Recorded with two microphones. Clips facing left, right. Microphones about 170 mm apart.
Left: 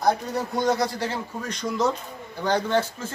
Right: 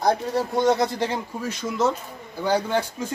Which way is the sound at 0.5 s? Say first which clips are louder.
Right 3 dB; 25° right (ahead or behind).